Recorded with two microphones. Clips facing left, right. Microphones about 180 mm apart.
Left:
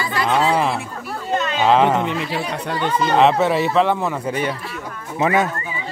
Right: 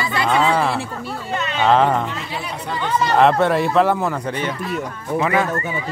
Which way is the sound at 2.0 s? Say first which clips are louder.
Left 5 dB; 70° left (ahead or behind).